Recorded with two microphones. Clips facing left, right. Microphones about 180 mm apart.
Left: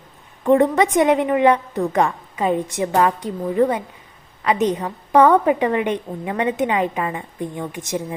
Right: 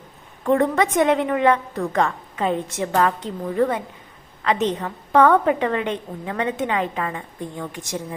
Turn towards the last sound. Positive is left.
turn(degrees=20)  # may be behind; listen again after turning